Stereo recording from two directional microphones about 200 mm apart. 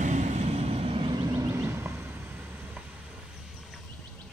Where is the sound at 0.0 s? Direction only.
35° right (ahead or behind); by 2.8 s 10° right (ahead or behind).